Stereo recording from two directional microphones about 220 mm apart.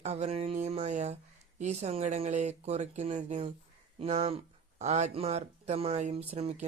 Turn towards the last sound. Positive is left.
turn(degrees=-30)  # may be behind; listen again after turning